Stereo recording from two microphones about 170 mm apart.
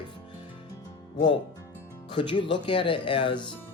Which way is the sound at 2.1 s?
30° left (ahead or behind).